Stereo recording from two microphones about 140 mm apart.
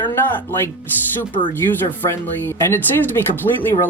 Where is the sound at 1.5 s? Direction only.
15° left (ahead or behind).